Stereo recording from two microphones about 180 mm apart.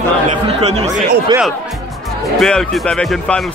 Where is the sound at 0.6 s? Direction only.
35° right (ahead or behind).